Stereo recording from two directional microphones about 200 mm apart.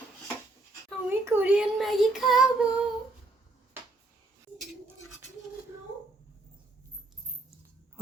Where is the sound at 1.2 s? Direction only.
10° right (ahead or behind).